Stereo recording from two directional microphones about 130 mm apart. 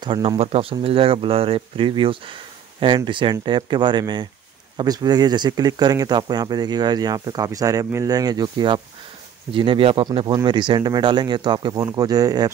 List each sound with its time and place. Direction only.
0.0 s speech: 40° right (ahead or behind)